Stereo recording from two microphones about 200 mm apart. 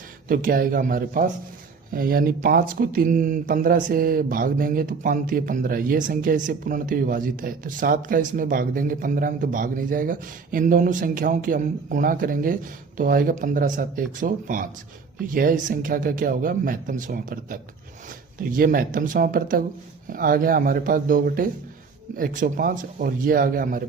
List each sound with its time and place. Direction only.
0.3 s speech: 45° right (ahead or behind)